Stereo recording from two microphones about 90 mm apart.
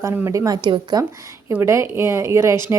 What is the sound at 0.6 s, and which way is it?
Speech, 55° right (ahead or behind).